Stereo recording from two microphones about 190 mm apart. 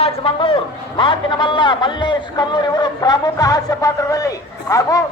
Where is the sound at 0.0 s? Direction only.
25° left (ahead or behind).